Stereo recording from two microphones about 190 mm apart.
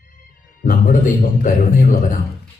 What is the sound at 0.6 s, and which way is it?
A man's voice, 45° left (ahead or behind).